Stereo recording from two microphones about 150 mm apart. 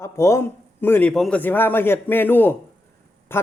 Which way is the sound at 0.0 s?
20° left (ahead or behind).